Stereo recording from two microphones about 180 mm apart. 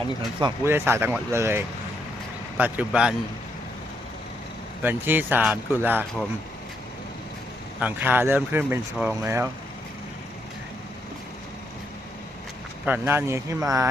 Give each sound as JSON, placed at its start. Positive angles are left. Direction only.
{"t": 0.2, "sound": "speech", "side_deg": -20}
{"t": 4.8, "sound": "speech", "side_deg": -10}
{"t": 7.8, "sound": "speech", "side_deg": -10}
{"t": 12.8, "sound": "speech", "side_deg": -10}